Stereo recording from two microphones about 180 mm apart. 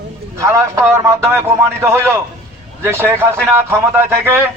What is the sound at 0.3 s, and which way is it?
A man's voice, 15° right (ahead or behind).